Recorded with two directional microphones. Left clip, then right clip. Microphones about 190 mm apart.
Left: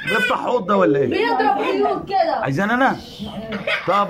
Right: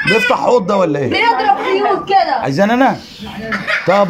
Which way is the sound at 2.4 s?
25° right (ahead or behind).